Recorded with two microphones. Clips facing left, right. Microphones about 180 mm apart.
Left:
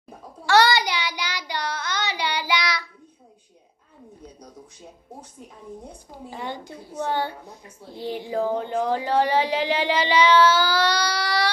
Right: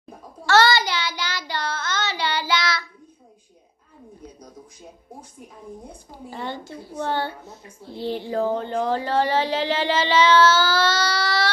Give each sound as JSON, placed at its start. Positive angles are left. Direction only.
{"t": 0.5, "sound": "child singing", "side_deg": 15}
{"t": 6.3, "sound": "a woman's voice", "side_deg": 15}